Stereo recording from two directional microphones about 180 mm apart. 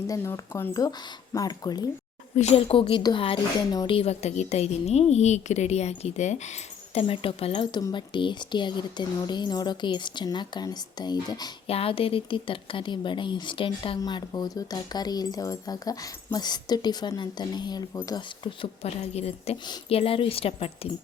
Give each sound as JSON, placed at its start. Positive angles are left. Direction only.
{"t": 0.1, "sound": "speech", "side_deg": 15}
{"t": 2.3, "sound": "speech", "side_deg": 35}